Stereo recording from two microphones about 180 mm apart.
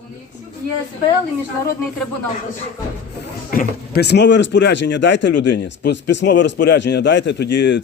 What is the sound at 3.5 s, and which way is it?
Speech, 55° left (ahead or behind).